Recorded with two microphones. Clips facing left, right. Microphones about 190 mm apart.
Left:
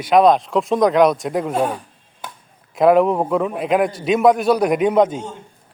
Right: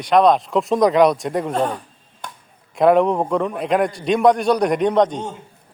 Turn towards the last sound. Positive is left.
turn(degrees=5)  # may be behind; listen again after turning